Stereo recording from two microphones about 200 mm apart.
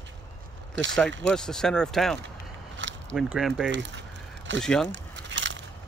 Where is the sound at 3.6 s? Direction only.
65° right (ahead or behind).